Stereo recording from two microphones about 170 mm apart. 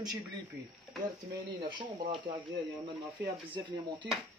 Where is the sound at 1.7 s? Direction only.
25° right (ahead or behind).